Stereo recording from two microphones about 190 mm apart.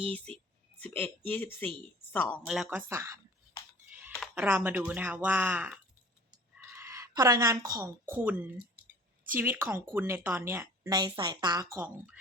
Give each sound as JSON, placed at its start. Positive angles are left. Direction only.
{"t": 0.8, "sound": "speech", "side_deg": 10}
{"t": 2.5, "sound": "speech", "side_deg": -5}
{"t": 4.4, "sound": "speech", "side_deg": -10}